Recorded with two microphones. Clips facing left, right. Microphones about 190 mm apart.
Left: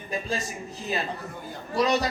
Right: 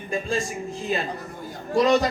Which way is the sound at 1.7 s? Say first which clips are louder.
Right 5 dB; 50° right (ahead or behind).